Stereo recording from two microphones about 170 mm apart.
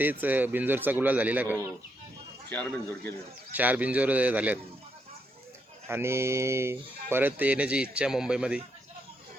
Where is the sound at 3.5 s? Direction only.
10° right (ahead or behind).